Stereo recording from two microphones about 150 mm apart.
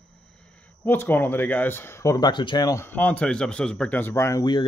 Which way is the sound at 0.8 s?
15° left (ahead or behind).